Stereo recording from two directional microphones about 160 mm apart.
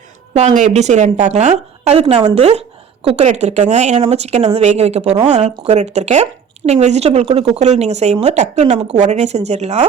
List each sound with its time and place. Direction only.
0.3 s speech: 45° right (ahead or behind)